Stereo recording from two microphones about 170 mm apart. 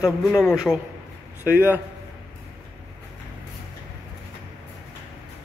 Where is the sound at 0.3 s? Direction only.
5° left (ahead or behind).